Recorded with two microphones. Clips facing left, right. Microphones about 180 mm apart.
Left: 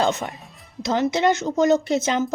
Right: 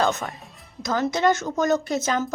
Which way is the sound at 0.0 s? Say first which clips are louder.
Left 1 dB; 20° left (ahead or behind).